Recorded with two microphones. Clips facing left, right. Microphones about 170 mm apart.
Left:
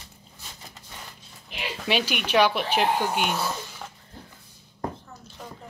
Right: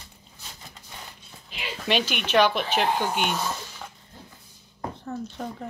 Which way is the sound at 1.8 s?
10° left (ahead or behind).